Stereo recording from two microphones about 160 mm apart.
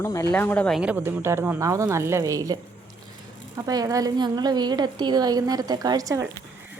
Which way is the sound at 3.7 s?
20° right (ahead or behind).